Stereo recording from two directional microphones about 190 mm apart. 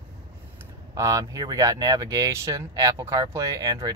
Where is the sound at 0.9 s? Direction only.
15° right (ahead or behind).